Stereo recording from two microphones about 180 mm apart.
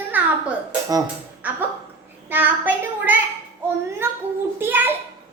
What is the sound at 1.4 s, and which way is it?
A child's voice, 10° right (ahead or behind).